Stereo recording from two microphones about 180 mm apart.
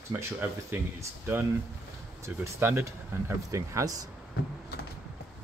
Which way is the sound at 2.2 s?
15° right (ahead or behind).